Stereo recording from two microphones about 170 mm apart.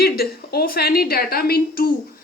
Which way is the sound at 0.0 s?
65° left (ahead or behind).